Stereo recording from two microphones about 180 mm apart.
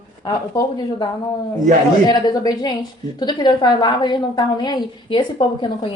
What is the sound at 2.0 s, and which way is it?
A woman's voice, 20° left (ahead or behind).